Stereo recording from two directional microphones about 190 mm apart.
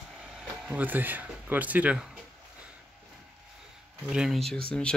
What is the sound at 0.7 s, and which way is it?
Speech, 10° right (ahead or behind).